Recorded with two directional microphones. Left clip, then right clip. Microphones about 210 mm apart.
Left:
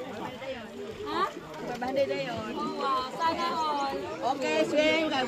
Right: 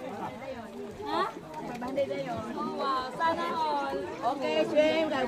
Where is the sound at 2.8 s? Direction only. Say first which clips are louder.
Left 1 dB; 35° left (ahead or behind).